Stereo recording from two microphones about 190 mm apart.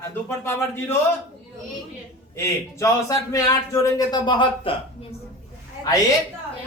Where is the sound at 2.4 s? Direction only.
15° left (ahead or behind).